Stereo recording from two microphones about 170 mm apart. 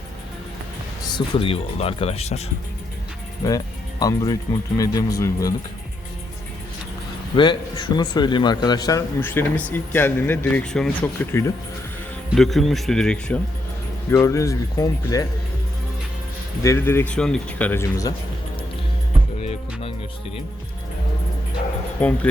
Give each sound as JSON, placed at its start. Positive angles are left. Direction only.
{"t": 1.0, "sound": "speech", "side_deg": 25}
{"t": 3.4, "sound": "a man's voice", "side_deg": 20}
{"t": 4.8, "sound": "a man's voice", "side_deg": 20}
{"t": 7.3, "sound": "a man's voice", "side_deg": 30}
{"t": 12.3, "sound": "speech", "side_deg": 0}
{"t": 14.1, "sound": "speech", "side_deg": 15}
{"t": 16.6, "sound": "speech", "side_deg": 15}
{"t": 19.4, "sound": "music", "side_deg": 40}
{"t": 22.0, "sound": "speech", "side_deg": 10}